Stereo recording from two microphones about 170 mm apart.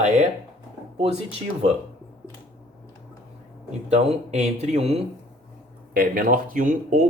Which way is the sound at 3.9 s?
40° right (ahead or behind).